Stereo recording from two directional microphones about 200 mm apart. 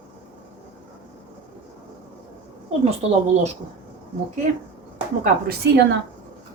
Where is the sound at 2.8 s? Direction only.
30° right (ahead or behind).